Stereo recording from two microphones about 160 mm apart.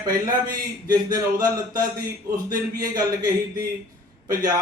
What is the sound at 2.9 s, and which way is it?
Speech, 25° right (ahead or behind).